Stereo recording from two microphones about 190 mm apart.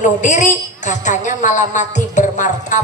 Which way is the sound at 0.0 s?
40° left (ahead or behind).